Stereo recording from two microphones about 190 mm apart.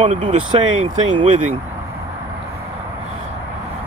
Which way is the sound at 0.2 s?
25° right (ahead or behind).